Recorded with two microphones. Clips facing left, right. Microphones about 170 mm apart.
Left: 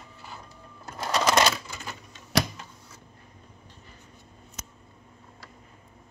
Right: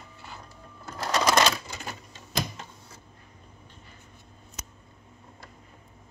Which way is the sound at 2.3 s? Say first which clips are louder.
Left 6 dB; 70° left (ahead or behind).